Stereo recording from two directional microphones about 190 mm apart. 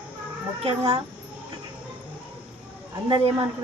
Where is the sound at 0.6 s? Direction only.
30° right (ahead or behind).